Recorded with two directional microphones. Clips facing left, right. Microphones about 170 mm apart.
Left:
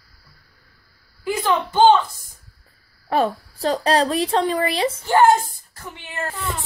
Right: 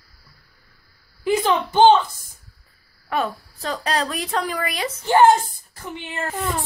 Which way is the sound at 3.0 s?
30° left (ahead or behind).